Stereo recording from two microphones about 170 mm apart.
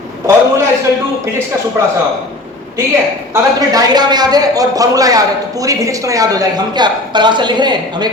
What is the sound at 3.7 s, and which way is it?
A man's voice, 25° right (ahead or behind).